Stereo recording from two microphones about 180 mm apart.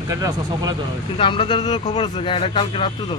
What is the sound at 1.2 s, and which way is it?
Speech, 30° left (ahead or behind).